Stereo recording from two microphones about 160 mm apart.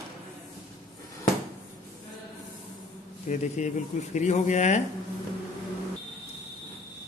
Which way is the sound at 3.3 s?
45° left (ahead or behind).